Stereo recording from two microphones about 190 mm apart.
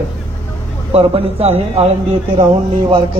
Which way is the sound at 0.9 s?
30° right (ahead or behind).